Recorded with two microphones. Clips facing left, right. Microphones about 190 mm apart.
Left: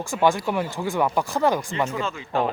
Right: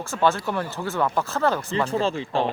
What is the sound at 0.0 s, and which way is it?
Speech, 15° left (ahead or behind).